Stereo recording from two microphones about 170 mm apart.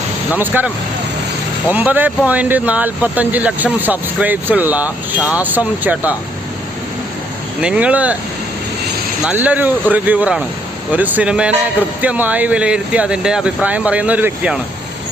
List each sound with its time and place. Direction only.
0.3 s speech: 10° right (ahead or behind)
1.7 s speech: 10° right (ahead or behind)
7.6 s speech: 5° right (ahead or behind)
9.2 s speech: 10° right (ahead or behind)